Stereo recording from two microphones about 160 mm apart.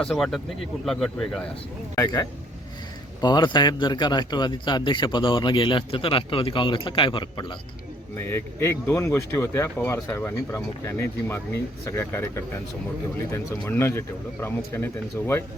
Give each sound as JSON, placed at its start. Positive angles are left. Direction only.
{"t": 0.0, "sound": "speech", "side_deg": 0}
{"t": 3.2, "sound": "a man's voice", "side_deg": 25}
{"t": 8.1, "sound": "speech", "side_deg": 15}
{"t": 13.7, "sound": "speech", "side_deg": 15}